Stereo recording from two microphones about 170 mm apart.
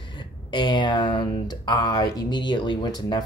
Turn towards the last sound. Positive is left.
turn(degrees=25)  # may be behind; listen again after turning